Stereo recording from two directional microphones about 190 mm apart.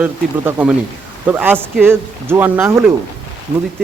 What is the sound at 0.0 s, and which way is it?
Speech, 5° right (ahead or behind).